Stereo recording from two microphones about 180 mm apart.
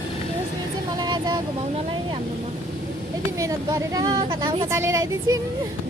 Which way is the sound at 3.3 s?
20° right (ahead or behind).